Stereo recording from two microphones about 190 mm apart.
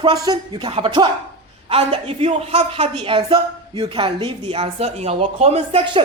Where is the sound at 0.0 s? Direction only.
20° right (ahead or behind).